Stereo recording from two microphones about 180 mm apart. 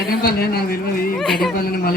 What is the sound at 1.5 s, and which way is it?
Speech, 55° left (ahead or behind).